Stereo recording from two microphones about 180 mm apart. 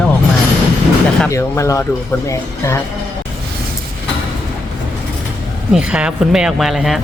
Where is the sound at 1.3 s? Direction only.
15° left (ahead or behind).